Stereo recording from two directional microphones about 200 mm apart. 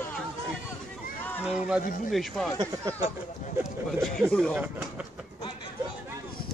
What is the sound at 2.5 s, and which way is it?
Speech, 15° right (ahead or behind).